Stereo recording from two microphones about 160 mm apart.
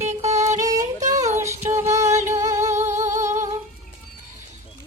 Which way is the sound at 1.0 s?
45° right (ahead or behind).